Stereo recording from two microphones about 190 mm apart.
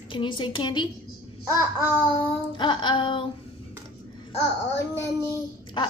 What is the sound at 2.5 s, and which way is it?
Speech, 25° left (ahead or behind).